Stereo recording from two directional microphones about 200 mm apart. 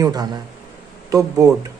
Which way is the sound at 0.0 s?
20° right (ahead or behind).